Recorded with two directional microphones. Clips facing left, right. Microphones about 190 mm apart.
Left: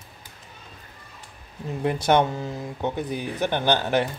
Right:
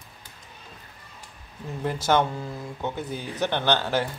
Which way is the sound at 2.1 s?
20° left (ahead or behind).